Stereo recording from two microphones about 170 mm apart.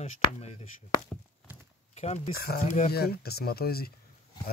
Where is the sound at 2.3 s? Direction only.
65° left (ahead or behind).